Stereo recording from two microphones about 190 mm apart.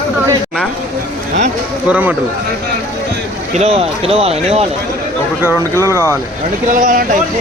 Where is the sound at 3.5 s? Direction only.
35° right (ahead or behind).